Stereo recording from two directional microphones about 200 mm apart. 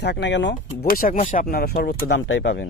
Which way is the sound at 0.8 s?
45° left (ahead or behind).